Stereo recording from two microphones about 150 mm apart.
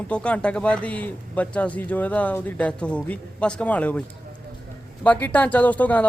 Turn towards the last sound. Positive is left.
turn(degrees=10)  # may be behind; listen again after turning